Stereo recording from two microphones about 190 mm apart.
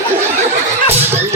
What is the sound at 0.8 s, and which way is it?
Slap, 10° right (ahead or behind).